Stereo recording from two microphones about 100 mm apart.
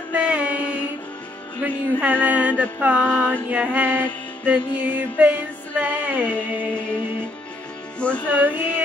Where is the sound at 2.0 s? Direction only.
15° right (ahead or behind).